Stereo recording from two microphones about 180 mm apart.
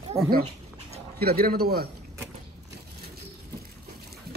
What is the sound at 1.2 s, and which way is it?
Speech, 60° right (ahead or behind).